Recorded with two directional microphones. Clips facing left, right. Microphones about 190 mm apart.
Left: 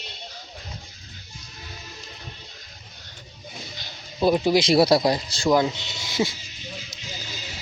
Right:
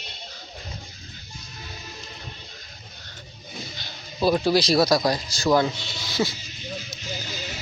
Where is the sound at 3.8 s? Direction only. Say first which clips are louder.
Left 2 dB; 15° left (ahead or behind).